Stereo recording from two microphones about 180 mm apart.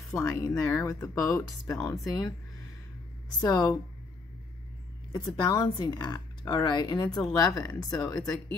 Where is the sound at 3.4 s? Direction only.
20° left (ahead or behind).